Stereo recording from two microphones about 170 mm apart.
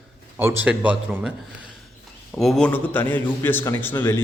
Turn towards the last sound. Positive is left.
turn(degrees=15)  # may be behind; listen again after turning